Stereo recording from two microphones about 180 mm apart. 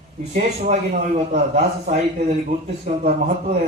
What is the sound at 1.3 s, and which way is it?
A man's voice, 40° right (ahead or behind).